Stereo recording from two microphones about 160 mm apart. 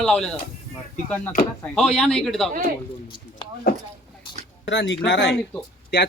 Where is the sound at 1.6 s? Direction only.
5° left (ahead or behind).